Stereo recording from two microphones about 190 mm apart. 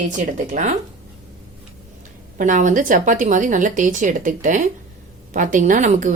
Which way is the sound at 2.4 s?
40° right (ahead or behind).